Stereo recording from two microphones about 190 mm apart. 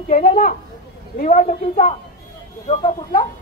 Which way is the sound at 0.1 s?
40° left (ahead or behind).